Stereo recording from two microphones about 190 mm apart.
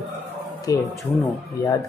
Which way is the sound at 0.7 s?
15° left (ahead or behind).